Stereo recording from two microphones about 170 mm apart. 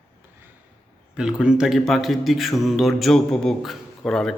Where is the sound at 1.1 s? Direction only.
5° right (ahead or behind).